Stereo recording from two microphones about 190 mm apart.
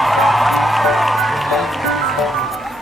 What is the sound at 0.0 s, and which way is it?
Music, centre (ahead or behind).